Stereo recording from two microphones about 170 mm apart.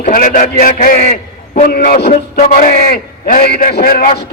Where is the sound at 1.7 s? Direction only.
60° left (ahead or behind).